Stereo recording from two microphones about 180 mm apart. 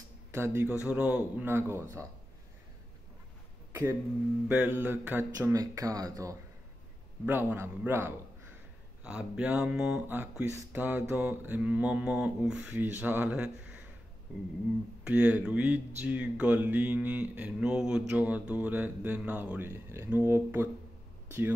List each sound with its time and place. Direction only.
0.3 s speech: 15° right (ahead or behind)
4.5 s speech: 10° right (ahead or behind)
15.0 s speech: 5° right (ahead or behind)